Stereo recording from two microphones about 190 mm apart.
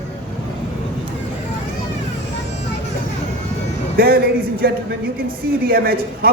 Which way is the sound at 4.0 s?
55° right (ahead or behind).